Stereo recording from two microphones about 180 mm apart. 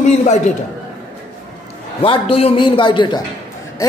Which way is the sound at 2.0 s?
30° left (ahead or behind).